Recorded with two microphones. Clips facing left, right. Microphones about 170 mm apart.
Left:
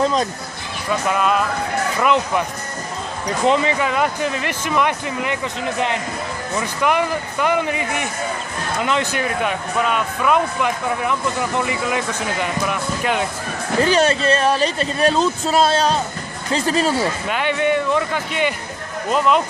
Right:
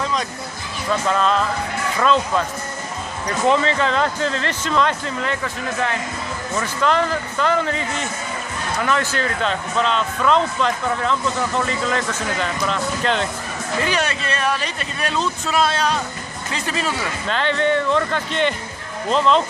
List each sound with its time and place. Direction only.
0.0 s speech: 35° left (ahead or behind)
0.8 s speech: 10° left (ahead or behind)
13.7 s speech: 35° left (ahead or behind)
17.3 s speech: 10° left (ahead or behind)